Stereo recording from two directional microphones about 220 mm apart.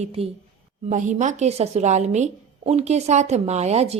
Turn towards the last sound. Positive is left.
turn(degrees=-30)  # may be behind; listen again after turning